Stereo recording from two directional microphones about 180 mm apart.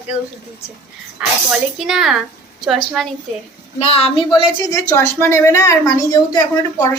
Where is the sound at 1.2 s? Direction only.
5° right (ahead or behind).